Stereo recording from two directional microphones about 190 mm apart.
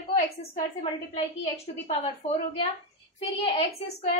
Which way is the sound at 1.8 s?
30° left (ahead or behind).